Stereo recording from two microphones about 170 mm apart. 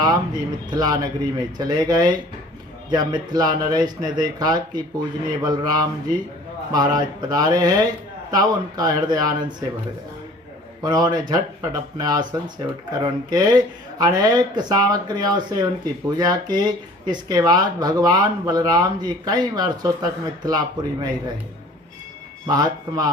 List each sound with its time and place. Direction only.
0.7 s speech: 25° right (ahead or behind)
10.8 s speech: 25° right (ahead or behind)
22.4 s speech: 25° right (ahead or behind)